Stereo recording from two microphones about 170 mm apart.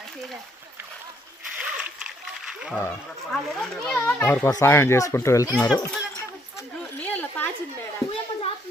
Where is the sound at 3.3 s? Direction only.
5° left (ahead or behind).